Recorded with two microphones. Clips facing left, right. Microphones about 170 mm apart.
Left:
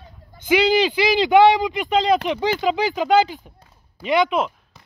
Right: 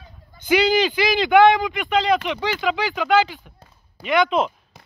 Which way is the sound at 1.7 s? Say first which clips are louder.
Left 1 dB; 35° left (ahead or behind).